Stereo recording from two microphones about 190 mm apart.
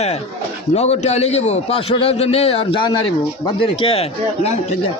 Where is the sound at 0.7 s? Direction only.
35° left (ahead or behind).